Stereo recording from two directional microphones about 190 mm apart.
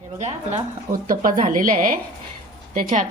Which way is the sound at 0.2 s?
35° right (ahead or behind).